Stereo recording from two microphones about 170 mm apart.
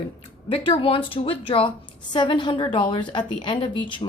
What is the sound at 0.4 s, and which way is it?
A woman's voice, 30° left (ahead or behind).